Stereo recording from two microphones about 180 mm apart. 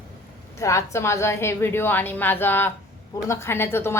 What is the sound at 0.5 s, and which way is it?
A woman's voice, 15° left (ahead or behind).